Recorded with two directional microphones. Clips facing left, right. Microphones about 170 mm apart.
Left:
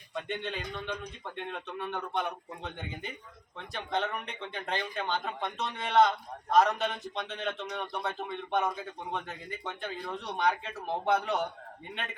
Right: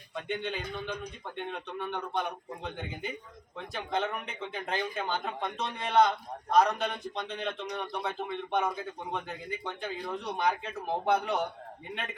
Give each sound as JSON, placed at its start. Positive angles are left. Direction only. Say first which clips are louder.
{"t": 0.1, "sound": "a man's voice", "louder": "right 1 dB", "side_deg": 0}